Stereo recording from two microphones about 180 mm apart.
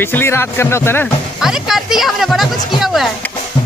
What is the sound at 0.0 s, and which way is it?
Speech, 10° left (ahead or behind).